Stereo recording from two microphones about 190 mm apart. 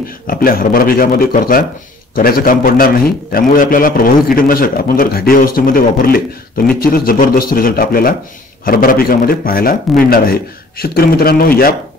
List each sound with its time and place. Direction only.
0.3 s a man's voice: 50° left (ahead or behind)